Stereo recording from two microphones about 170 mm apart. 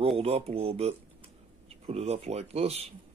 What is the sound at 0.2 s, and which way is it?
Speech, 35° right (ahead or behind).